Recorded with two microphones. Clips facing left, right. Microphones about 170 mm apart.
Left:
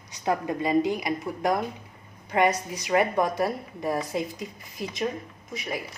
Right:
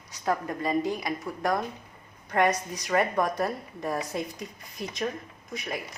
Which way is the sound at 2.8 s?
10° left (ahead or behind).